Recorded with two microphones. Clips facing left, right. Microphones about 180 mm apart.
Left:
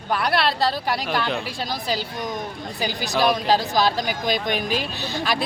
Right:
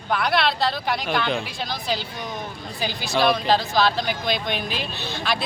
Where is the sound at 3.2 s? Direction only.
10° left (ahead or behind).